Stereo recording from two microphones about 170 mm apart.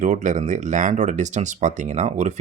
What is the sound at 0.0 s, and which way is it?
Speech, 50° right (ahead or behind).